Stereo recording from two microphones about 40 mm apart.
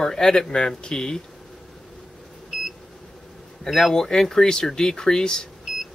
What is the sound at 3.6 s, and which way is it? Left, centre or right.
Speech, centre.